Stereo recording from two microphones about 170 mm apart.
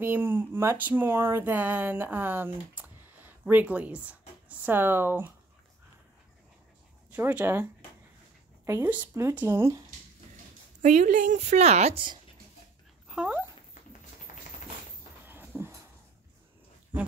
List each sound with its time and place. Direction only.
0.0 s speech: 10° right (ahead or behind)
7.1 s speech: 10° right (ahead or behind)
8.6 s speech: 15° right (ahead or behind)
10.8 s a woman's voice: 45° right (ahead or behind)
13.1 s speech: 5° right (ahead or behind)
15.2 s a sound: 10° right (ahead or behind)